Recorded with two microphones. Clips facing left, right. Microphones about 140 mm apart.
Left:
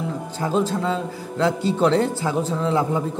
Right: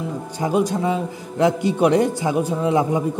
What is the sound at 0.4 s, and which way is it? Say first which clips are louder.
A man's voice: right 2 dB; 15° right (ahead or behind).